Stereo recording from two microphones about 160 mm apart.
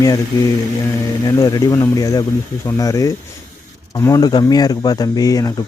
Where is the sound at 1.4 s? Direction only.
20° left (ahead or behind).